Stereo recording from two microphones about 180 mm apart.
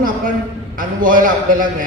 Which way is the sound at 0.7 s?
50° right (ahead or behind).